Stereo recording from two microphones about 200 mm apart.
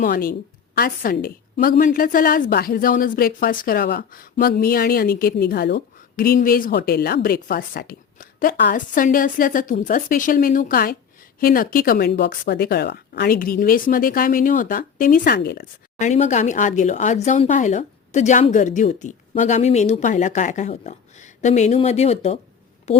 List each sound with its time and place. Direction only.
0.0 s a woman's voice: 45° left (ahead or behind)
16.0 s speech: 35° left (ahead or behind)